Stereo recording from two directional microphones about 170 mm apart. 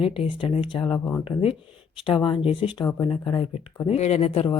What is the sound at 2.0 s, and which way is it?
Speech, 30° left (ahead or behind).